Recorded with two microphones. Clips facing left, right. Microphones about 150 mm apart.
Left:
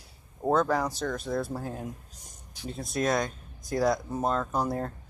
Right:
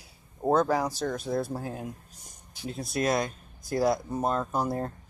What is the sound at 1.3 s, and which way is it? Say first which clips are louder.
Speech: right 1 dB; 20° right (ahead or behind).